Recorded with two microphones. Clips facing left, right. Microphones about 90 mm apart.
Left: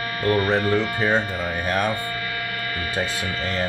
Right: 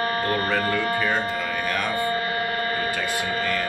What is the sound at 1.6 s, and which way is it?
Speech, 30° left (ahead or behind).